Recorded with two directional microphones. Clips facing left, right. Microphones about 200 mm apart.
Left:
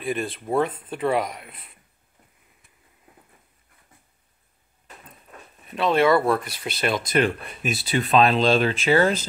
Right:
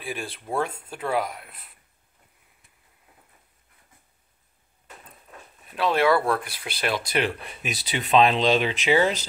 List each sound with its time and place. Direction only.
0.0 s speech: centre (ahead or behind)
5.7 s speech: 5° right (ahead or behind)